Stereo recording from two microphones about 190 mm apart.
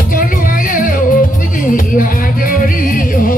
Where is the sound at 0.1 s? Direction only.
50° left (ahead or behind).